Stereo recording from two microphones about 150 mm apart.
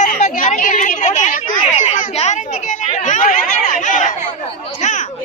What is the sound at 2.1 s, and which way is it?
Chatter, 50° left (ahead or behind).